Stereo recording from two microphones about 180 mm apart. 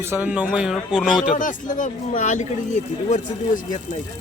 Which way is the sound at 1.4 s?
45° left (ahead or behind).